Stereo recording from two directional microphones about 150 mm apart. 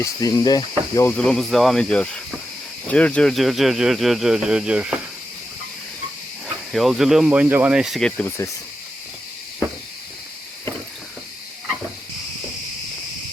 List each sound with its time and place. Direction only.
0.0 s speech: 25° left (ahead or behind)
1.0 s speech: 5° left (ahead or behind)
6.7 s speech: centre (ahead or behind)